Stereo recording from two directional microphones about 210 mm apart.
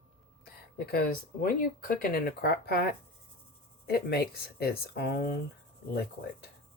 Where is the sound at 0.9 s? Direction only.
45° left (ahead or behind).